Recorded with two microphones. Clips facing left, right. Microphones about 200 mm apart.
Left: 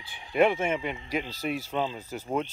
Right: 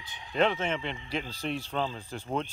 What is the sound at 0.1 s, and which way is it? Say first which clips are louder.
Speech: left 4 dB; 10° left (ahead or behind).